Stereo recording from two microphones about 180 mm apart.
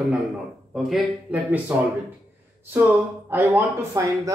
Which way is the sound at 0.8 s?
5° right (ahead or behind).